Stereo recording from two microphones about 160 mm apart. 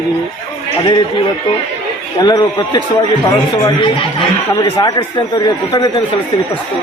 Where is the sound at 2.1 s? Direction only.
25° left (ahead or behind).